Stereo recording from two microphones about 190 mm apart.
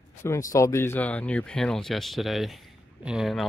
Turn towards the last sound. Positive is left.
turn(degrees=0)  # may be behind; listen again after turning